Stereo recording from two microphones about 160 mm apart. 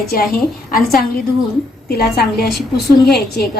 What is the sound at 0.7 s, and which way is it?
Speech, 65° left (ahead or behind).